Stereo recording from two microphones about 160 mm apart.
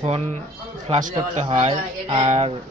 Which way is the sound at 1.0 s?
50° right (ahead or behind).